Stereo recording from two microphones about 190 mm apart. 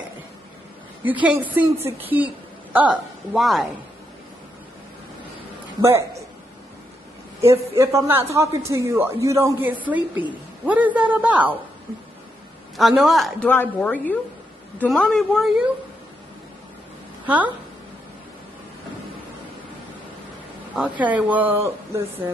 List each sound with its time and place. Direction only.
1.2 s a man's voice: 10° right (ahead or behind)
5.8 s a man's voice: 15° right (ahead or behind)
7.4 s a man's voice: 15° right (ahead or behind)
12.7 s a woman's voice: centre (ahead or behind)
20.7 s a man's voice: 5° right (ahead or behind)